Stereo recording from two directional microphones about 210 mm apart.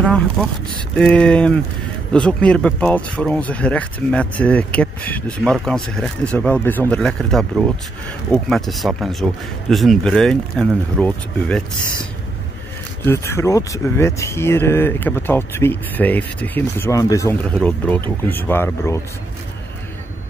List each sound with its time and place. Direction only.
0.0 s a sound: 5° left (ahead or behind)
0.9 s speech: 5° left (ahead or behind)
13.0 s speech: 10° left (ahead or behind)